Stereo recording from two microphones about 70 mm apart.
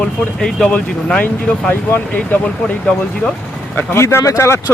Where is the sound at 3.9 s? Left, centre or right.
Left.